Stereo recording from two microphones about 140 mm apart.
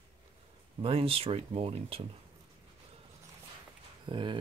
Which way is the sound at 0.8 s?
45° right (ahead or behind).